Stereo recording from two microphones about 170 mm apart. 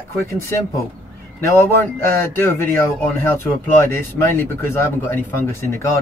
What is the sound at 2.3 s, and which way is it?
Speech, 15° left (ahead or behind).